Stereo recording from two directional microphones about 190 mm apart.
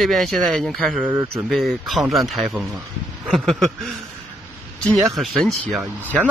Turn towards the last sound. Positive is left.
turn(degrees=-10)  # may be behind; listen again after turning